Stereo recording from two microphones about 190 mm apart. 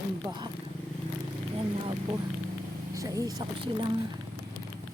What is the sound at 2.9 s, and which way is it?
Speech, 15° right (ahead or behind).